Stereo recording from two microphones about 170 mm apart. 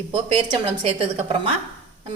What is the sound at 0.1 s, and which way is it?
A woman's voice, 35° right (ahead or behind).